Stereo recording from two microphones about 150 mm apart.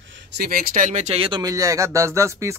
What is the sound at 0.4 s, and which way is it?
Speech, 75° right (ahead or behind).